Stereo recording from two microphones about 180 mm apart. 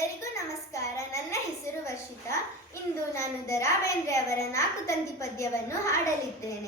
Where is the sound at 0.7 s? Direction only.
15° left (ahead or behind).